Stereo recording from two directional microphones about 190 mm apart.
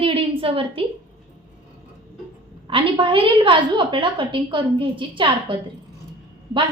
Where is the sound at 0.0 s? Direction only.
30° right (ahead or behind).